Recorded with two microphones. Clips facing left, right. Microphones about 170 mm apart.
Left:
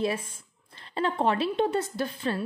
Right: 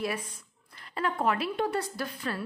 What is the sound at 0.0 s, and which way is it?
A woman's voice, 25° left (ahead or behind).